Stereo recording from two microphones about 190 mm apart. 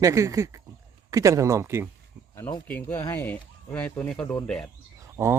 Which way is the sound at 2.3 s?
15° left (ahead or behind).